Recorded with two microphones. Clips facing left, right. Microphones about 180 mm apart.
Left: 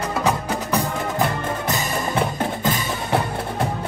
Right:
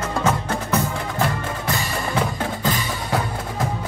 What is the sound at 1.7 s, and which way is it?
Music, 25° left (ahead or behind).